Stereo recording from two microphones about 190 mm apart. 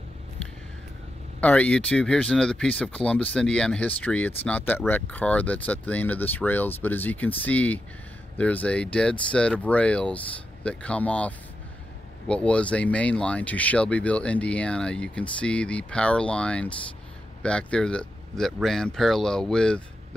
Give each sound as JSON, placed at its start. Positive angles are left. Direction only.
{"t": 1.4, "sound": "speech", "side_deg": 5}